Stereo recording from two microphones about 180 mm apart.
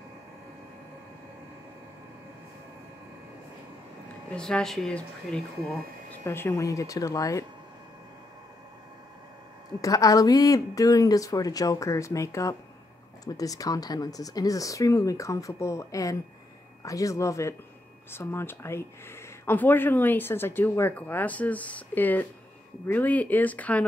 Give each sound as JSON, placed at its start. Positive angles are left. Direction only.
{"t": 4.4, "sound": "speech", "side_deg": 5}
{"t": 9.8, "sound": "speech", "side_deg": 20}